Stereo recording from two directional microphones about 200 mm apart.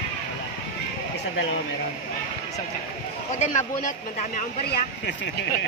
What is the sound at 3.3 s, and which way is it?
Speech, 35° left (ahead or behind).